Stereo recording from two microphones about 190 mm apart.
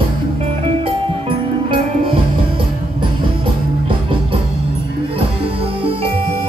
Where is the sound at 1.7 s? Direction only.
25° right (ahead or behind).